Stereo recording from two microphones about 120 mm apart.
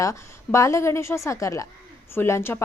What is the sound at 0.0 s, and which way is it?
A woman's voice, 25° left (ahead or behind).